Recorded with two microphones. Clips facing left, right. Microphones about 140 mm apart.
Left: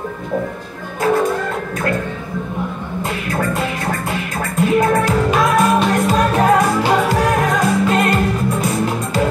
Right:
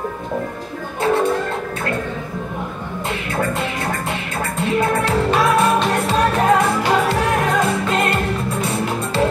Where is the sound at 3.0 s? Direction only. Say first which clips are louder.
Left 1 dB; 25° right (ahead or behind).